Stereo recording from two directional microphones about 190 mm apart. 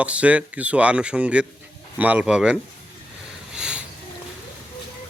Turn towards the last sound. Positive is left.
turn(degrees=-5)  # may be behind; listen again after turning